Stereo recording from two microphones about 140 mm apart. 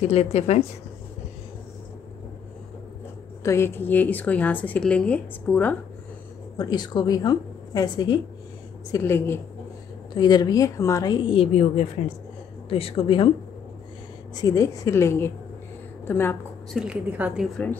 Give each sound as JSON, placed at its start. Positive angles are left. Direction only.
{"t": 0.1, "sound": "speech", "side_deg": 50}
{"t": 3.4, "sound": "a woman's voice", "side_deg": 20}
{"t": 6.5, "sound": "a woman's voice", "side_deg": 30}
{"t": 8.9, "sound": "a woman's voice", "side_deg": 20}
{"t": 10.1, "sound": "speech", "side_deg": 30}
{"t": 14.3, "sound": "a woman's voice", "side_deg": 25}
{"t": 16.7, "sound": "a woman's voice", "side_deg": -5}